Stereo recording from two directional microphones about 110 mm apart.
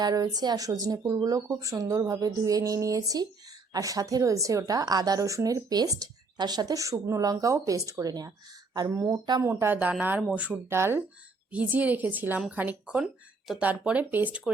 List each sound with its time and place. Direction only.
0.0 s a woman's voice: 35° right (ahead or behind); by 10.6 s 10° right (ahead or behind)
10.7 s speech: 20° right (ahead or behind)